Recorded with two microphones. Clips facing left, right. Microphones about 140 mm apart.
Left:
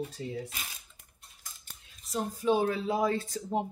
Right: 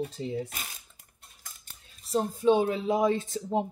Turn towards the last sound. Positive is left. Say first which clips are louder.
# right 3 dB
turn(degrees=-20)  # may be behind; listen again after turning